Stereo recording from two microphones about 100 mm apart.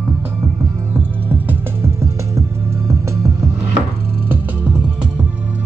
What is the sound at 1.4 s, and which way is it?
Music, 25° right (ahead or behind).